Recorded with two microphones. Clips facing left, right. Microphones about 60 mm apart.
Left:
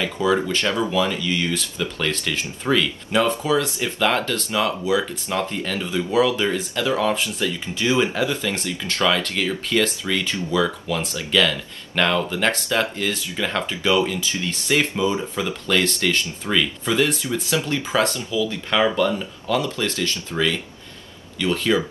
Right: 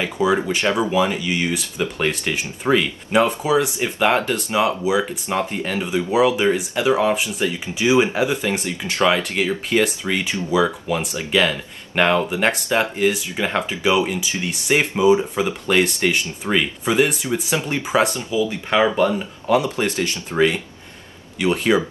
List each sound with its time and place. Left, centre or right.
0.2 s speech: centre